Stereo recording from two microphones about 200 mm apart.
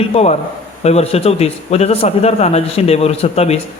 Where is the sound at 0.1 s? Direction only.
30° left (ahead or behind).